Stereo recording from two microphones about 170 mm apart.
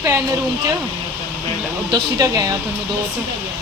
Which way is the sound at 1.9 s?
20° right (ahead or behind).